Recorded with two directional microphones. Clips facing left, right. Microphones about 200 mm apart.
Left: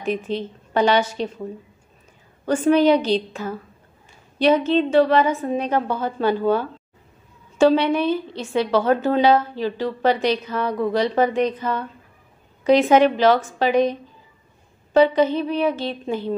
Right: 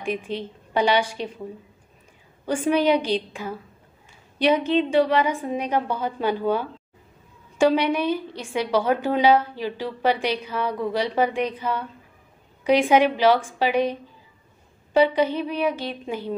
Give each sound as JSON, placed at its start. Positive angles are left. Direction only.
{"t": 0.0, "sound": "a woman's voice", "side_deg": -10}
{"t": 2.4, "sound": "a woman's voice", "side_deg": -10}
{"t": 15.0, "sound": "a woman's voice", "side_deg": -10}